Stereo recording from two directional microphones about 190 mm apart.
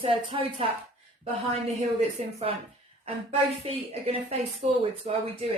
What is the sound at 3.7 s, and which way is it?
Speech, 35° right (ahead or behind).